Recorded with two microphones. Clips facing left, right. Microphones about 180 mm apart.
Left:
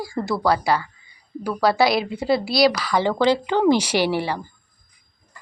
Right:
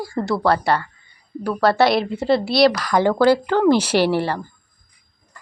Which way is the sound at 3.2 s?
15° left (ahead or behind).